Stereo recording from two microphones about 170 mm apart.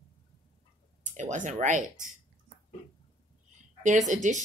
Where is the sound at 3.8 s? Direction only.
45° right (ahead or behind).